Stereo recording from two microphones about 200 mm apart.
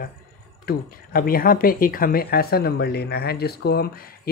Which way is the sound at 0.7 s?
45° left (ahead or behind).